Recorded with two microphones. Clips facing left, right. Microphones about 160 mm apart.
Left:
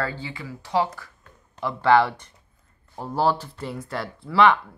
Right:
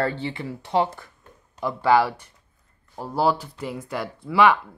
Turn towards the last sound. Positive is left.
turn(degrees=-5)  # may be behind; listen again after turning